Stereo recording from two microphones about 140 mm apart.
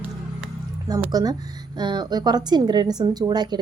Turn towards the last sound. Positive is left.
turn(degrees=-30)  # may be behind; listen again after turning